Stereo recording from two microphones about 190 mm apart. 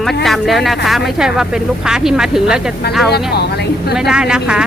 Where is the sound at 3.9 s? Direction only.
5° right (ahead or behind).